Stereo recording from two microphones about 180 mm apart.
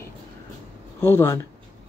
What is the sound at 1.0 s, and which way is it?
Speech, 15° left (ahead or behind).